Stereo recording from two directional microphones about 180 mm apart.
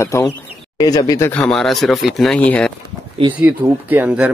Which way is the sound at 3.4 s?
10° right (ahead or behind).